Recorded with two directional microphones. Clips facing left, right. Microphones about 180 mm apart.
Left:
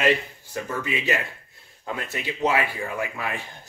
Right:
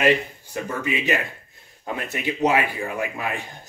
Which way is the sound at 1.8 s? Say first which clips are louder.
Right 3 dB; 20° right (ahead or behind).